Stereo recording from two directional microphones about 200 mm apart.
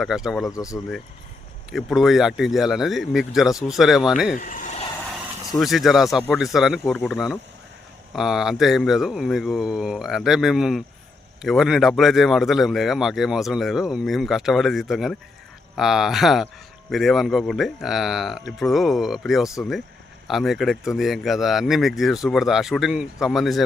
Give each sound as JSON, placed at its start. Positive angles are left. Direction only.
{"t": 0.0, "sound": "speech", "side_deg": 0}
{"t": 0.5, "sound": "speech", "side_deg": 15}
{"t": 1.7, "sound": "speech", "side_deg": 0}
{"t": 4.4, "sound": "a sound", "side_deg": 40}
{"t": 5.5, "sound": "speech", "side_deg": 0}